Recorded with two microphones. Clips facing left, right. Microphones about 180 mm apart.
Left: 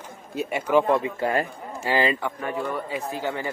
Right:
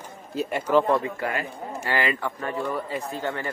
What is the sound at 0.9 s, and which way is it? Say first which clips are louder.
Speech: left 2 dB; 25° left (ahead or behind).